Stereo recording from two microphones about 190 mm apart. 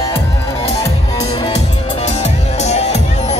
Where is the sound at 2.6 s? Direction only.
35° left (ahead or behind).